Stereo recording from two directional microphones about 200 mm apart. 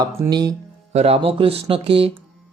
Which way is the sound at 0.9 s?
30° right (ahead or behind).